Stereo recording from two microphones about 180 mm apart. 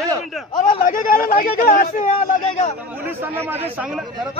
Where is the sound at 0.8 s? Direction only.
50° left (ahead or behind).